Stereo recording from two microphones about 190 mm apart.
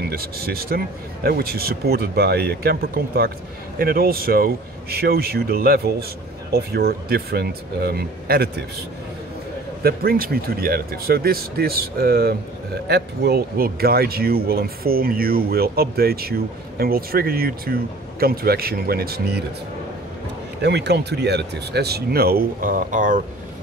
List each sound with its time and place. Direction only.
0.0 s speech: 55° right (ahead or behind)
9.8 s speech: 50° right (ahead or behind)
20.6 s speech: 60° right (ahead or behind); by 23.2 s 45° right (ahead or behind)